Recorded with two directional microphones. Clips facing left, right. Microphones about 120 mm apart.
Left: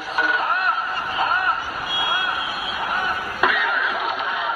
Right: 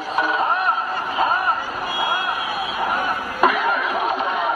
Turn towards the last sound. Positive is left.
turn(degrees=-35)  # may be behind; listen again after turning